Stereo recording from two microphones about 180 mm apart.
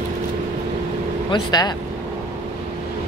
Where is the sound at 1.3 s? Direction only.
25° left (ahead or behind).